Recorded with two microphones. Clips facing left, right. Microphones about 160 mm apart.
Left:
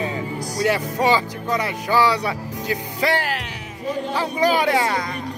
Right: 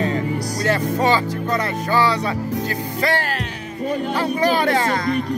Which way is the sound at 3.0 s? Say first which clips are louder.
Even; 15° left (ahead or behind).